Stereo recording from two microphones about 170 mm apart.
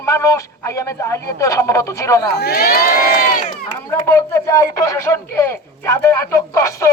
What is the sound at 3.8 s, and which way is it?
Speech, 15° left (ahead or behind).